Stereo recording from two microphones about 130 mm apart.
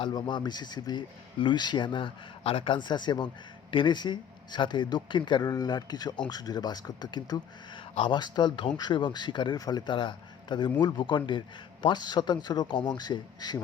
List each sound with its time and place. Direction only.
0.0 s speech: 35° left (ahead or behind)